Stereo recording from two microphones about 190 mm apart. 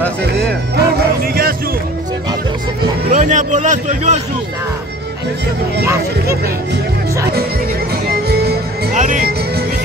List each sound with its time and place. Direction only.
0.5 s music: 55° right (ahead or behind)
3.1 s speech: 40° right (ahead or behind)
8.1 s music: 55° right (ahead or behind)
8.9 s music: 40° right (ahead or behind)